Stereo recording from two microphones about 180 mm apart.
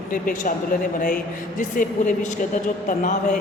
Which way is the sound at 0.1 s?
50° left (ahead or behind).